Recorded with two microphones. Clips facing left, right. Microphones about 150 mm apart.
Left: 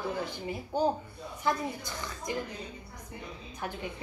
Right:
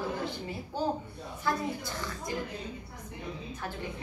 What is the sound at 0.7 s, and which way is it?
Speech, 15° left (ahead or behind).